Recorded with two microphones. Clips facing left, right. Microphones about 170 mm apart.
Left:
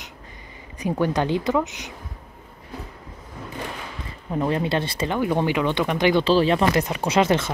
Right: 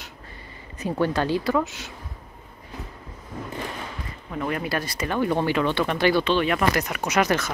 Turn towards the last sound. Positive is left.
turn(degrees=25)  # may be behind; listen again after turning